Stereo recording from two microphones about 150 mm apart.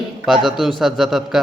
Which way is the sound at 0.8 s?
Centre (ahead or behind).